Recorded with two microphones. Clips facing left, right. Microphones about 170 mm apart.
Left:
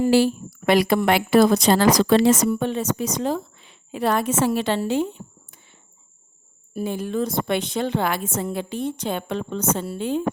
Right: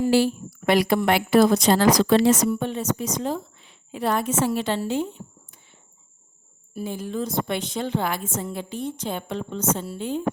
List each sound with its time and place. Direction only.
0.1 s a woman's voice: 90° left
6.7 s a woman's voice: 70° left (ahead or behind); by 10.2 s 85° left